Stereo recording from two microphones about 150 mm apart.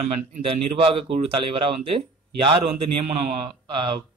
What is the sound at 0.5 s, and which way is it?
Speech, 40° right (ahead or behind).